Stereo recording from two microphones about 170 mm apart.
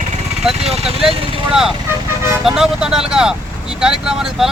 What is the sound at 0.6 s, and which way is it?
Speech, 40° right (ahead or behind).